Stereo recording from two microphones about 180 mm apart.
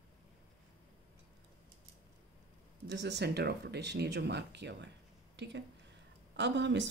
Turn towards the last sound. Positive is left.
turn(degrees=-80)